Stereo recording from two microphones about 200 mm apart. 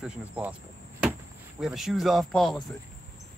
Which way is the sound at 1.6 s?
Centre (ahead or behind).